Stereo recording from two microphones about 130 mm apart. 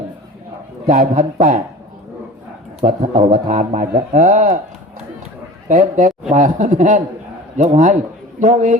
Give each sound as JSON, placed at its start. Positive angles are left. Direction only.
{"t": 0.9, "sound": "a man's voice", "side_deg": -75}
{"t": 2.8, "sound": "a man's voice", "side_deg": -75}
{"t": 5.6, "sound": "a man's voice", "side_deg": -80}